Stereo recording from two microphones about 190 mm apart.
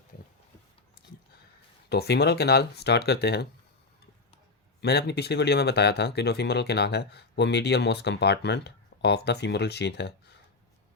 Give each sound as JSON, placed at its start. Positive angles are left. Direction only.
{"t": 1.9, "sound": "speech", "side_deg": 55}
{"t": 4.8, "sound": "speech", "side_deg": 60}